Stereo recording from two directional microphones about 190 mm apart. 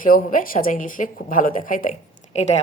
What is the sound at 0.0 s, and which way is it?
Speech, 45° left (ahead or behind).